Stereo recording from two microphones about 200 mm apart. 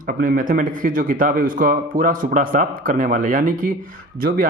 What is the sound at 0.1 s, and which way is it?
Speech, 45° right (ahead or behind).